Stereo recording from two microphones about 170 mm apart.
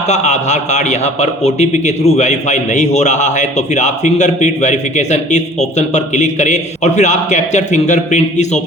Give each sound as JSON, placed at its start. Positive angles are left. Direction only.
{"t": 0.1, "sound": "a man's voice", "side_deg": 45}